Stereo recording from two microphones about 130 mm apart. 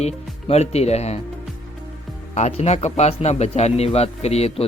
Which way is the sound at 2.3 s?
60° left (ahead or behind).